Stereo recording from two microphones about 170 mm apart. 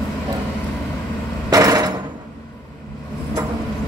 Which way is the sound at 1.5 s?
20° right (ahead or behind).